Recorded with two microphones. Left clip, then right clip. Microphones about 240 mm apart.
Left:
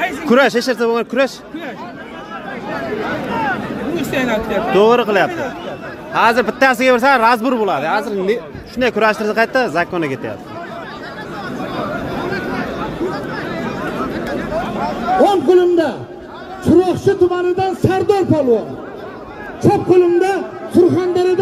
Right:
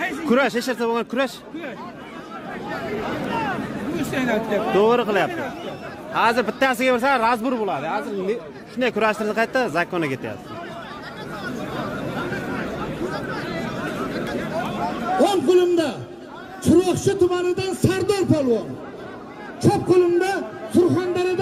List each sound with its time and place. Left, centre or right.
0.3 s a man's voice: centre
4.1 s speech: left
4.7 s a man's voice: centre
13.1 s chatter: right
15.1 s a man's voice: right
19.6 s a man's voice: right